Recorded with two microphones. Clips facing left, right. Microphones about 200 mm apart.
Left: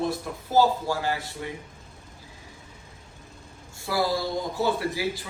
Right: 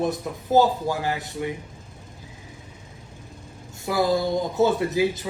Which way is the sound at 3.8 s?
20° right (ahead or behind).